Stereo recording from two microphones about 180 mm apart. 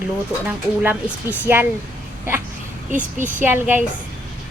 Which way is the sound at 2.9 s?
45° right (ahead or behind).